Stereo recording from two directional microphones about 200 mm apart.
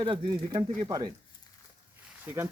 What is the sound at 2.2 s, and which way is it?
Speech, 10° right (ahead or behind).